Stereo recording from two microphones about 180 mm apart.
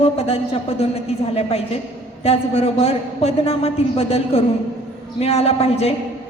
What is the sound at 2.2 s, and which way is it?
A woman's voice, 35° left (ahead or behind).